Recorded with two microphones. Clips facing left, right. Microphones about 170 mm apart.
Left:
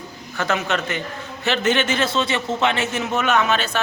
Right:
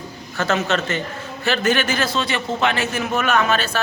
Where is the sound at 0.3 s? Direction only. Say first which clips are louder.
Right 2 dB; 15° left (ahead or behind).